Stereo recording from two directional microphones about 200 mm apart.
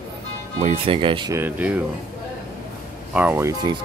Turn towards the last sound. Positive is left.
turn(degrees=-20)  # may be behind; listen again after turning